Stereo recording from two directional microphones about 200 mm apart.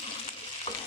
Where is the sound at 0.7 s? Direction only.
30° left (ahead or behind).